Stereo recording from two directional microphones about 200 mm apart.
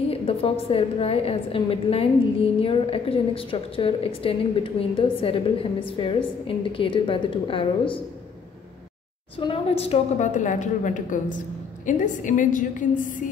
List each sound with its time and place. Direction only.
0.1 s a woman's voice: 30° left (ahead or behind)
9.4 s a woman's voice: 30° left (ahead or behind)